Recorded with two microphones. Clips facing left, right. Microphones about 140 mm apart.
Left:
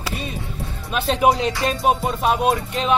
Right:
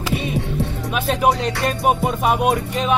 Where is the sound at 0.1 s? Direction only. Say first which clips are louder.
Right 7 dB; 70° right (ahead or behind).